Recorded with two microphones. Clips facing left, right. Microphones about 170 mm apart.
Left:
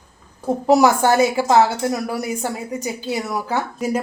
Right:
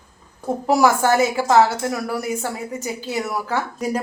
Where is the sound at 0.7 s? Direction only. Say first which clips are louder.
Left 2 dB; 20° left (ahead or behind).